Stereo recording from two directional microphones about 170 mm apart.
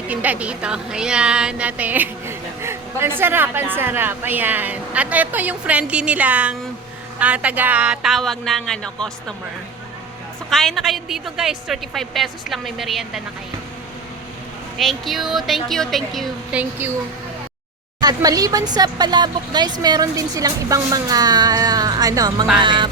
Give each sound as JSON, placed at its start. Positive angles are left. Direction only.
{"t": 0.1, "sound": "a woman's voice", "side_deg": -10}
{"t": 10.5, "sound": "a woman's voice", "side_deg": 0}
{"t": 14.8, "sound": "a woman's voice", "side_deg": 0}
{"t": 18.0, "sound": "a woman's voice", "side_deg": -20}